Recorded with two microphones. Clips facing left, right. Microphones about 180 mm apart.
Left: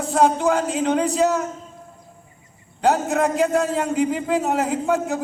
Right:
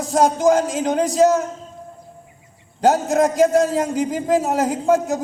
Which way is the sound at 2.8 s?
40° right (ahead or behind).